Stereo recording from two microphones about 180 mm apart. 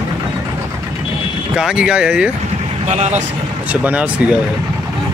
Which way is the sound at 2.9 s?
40° right (ahead or behind).